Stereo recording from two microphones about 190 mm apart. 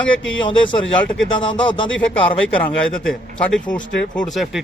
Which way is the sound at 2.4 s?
5° left (ahead or behind).